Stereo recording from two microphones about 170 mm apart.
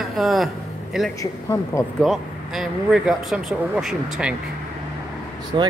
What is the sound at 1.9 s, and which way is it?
Speech, centre (ahead or behind).